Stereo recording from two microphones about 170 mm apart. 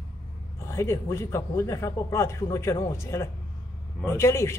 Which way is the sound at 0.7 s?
15° left (ahead or behind).